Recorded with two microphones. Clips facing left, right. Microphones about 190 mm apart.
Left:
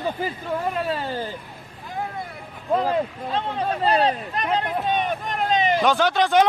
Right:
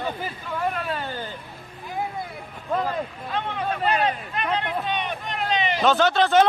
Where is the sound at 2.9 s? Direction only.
35° left (ahead or behind).